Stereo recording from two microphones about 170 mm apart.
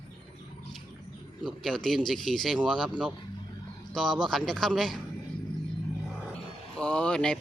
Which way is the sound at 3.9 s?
Centre (ahead or behind).